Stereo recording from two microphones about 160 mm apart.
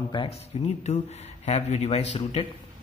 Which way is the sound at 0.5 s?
40° left (ahead or behind).